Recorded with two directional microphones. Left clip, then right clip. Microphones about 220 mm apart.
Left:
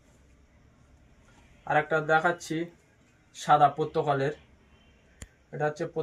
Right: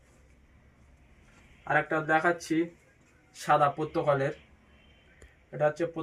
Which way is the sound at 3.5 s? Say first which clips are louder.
Left 3 dB; 15° left (ahead or behind).